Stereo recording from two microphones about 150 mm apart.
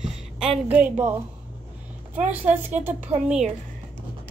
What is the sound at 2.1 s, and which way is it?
Speech, 10° right (ahead or behind).